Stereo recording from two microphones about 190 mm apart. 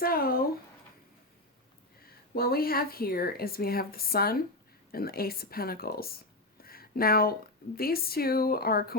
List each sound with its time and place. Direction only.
0.0 s speech: 50° left (ahead or behind)
2.0 s speech: 50° left (ahead or behind)
6.6 s a sound: 50° left (ahead or behind)
7.8 s speech: 50° left (ahead or behind)